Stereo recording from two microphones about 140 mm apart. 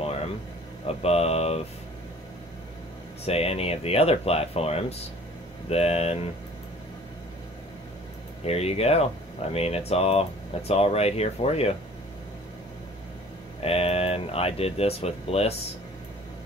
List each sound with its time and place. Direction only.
0.8 s speech: 45° left (ahead or behind)
3.3 s speech: 45° left (ahead or behind)
8.5 s speech: 45° left (ahead or behind)
13.6 s speech: 45° left (ahead or behind)